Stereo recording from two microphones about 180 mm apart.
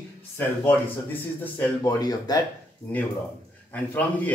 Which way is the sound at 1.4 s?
20° left (ahead or behind).